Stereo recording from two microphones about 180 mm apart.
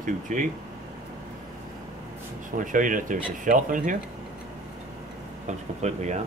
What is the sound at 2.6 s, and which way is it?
Speech, 45° right (ahead or behind).